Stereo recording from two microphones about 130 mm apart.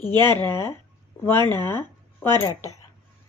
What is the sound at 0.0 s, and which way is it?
Speech, 15° left (ahead or behind).